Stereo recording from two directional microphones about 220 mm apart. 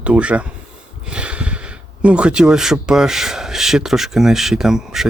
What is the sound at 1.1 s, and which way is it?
Speech, 5° right (ahead or behind).